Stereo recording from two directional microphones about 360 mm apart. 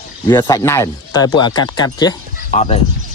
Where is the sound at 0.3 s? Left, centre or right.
Centre.